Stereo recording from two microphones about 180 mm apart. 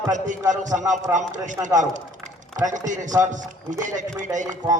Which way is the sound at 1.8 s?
45° right (ahead or behind).